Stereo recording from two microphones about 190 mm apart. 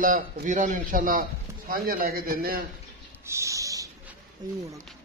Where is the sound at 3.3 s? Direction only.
15° right (ahead or behind).